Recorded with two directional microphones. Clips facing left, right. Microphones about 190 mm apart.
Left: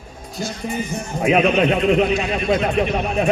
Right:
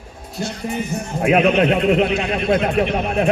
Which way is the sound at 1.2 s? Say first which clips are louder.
Right 1 dB; 5° right (ahead or behind).